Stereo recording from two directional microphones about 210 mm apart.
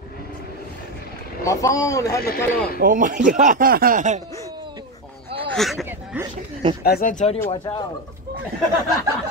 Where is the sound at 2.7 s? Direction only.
40° right (ahead or behind).